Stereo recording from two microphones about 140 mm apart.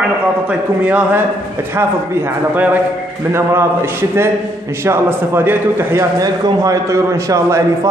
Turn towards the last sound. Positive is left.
turn(degrees=-20)  # may be behind; listen again after turning